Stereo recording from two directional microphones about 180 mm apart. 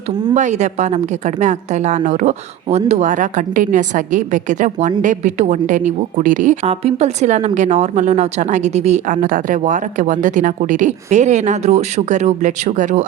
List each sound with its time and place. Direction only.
0.3 s a woman's voice: 40° right (ahead or behind)